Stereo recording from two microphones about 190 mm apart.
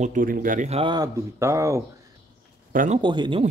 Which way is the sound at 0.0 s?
45° right (ahead or behind).